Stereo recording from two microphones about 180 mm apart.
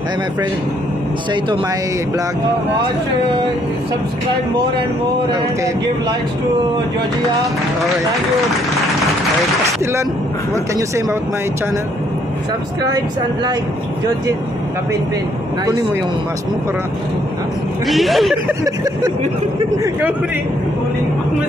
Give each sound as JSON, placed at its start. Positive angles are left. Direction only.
{"t": 10.5, "sound": "speech", "side_deg": -15}
{"t": 17.8, "sound": "speech", "side_deg": 0}